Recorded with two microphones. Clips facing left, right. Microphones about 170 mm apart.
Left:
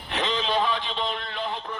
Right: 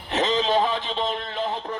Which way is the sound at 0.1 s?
40° right (ahead or behind).